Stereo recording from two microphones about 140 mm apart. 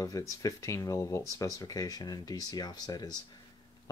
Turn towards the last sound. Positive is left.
turn(degrees=25)  # may be behind; listen again after turning